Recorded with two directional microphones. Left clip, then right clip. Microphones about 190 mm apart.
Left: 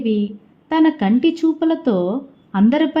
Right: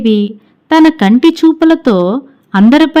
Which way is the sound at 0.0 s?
30° right (ahead or behind).